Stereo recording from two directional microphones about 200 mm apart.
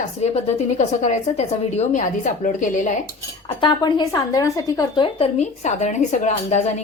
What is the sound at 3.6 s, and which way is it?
Speech, 20° left (ahead or behind).